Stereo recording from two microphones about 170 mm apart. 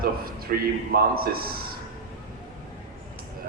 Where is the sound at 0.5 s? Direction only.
55° right (ahead or behind).